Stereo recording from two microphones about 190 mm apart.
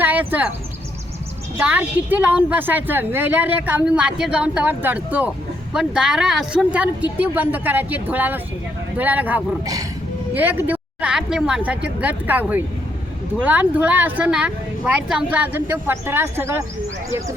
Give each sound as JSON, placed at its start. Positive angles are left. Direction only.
{"t": 0.0, "sound": "speech", "side_deg": -10}
{"t": 1.5, "sound": "a woman's voice", "side_deg": -10}